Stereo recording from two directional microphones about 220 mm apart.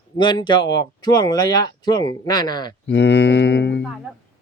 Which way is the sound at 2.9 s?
55° left (ahead or behind).